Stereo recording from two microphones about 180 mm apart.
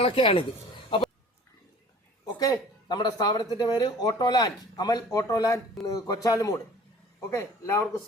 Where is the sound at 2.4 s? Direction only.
20° left (ahead or behind).